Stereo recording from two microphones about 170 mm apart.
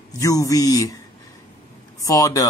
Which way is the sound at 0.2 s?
20° left (ahead or behind).